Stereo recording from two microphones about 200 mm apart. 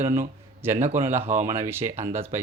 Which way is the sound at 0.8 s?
35° right (ahead or behind).